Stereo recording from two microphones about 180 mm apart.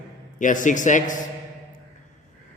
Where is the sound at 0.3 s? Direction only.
45° left (ahead or behind).